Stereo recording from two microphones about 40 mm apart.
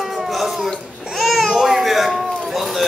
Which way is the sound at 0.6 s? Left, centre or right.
Centre.